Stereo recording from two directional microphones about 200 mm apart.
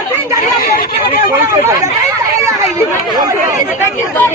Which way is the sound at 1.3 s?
15° right (ahead or behind).